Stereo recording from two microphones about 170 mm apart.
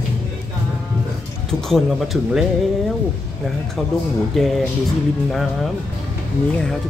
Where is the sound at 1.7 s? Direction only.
Centre (ahead or behind).